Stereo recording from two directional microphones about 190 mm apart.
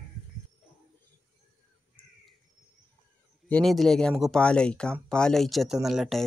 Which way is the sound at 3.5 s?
Centre (ahead or behind).